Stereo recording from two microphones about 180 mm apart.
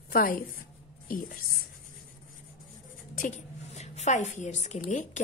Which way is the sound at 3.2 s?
40° left (ahead or behind).